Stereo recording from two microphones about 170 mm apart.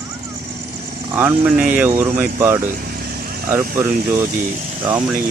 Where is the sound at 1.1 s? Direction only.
10° right (ahead or behind).